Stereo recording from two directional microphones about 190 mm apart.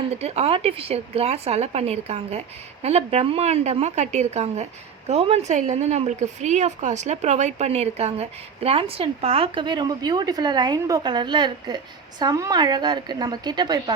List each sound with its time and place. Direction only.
0.2 s a woman's voice: 35° right (ahead or behind)